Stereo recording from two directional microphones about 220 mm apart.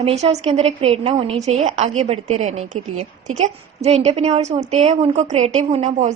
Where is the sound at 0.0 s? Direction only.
25° right (ahead or behind).